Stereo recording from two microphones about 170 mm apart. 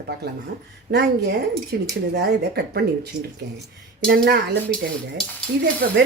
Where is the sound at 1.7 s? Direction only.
70° right (ahead or behind).